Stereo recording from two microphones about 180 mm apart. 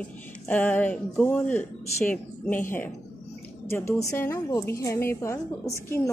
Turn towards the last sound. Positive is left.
turn(degrees=15)  # may be behind; listen again after turning